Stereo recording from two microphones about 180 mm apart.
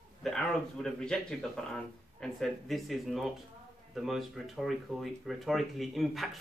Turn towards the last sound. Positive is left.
turn(degrees=0)  # may be behind; listen again after turning